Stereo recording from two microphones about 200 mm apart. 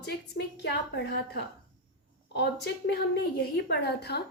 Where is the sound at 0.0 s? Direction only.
55° left (ahead or behind).